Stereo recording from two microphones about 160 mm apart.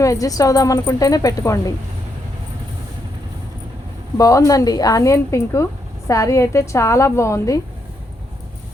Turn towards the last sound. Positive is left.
turn(degrees=20)  # may be behind; listen again after turning